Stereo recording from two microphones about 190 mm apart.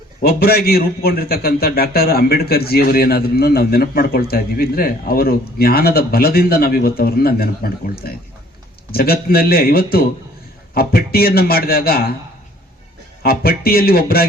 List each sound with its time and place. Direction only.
0.2 s a man's voice: 55° left (ahead or behind)
13.2 s a man's voice: 55° left (ahead or behind)